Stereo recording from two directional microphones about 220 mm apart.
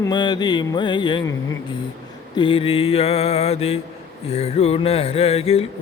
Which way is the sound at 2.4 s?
25° left (ahead or behind).